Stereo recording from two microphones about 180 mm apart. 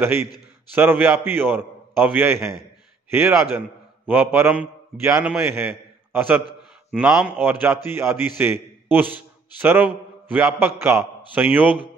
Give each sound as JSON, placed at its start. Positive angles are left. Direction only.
{"t": 0.7, "sound": "a man's voice", "side_deg": -10}